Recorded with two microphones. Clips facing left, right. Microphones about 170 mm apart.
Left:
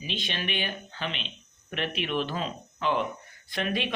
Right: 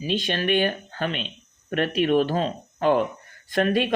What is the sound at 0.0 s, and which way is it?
Speech, 45° right (ahead or behind).